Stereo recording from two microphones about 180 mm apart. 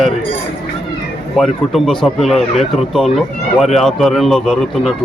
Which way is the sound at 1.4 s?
Centre (ahead or behind).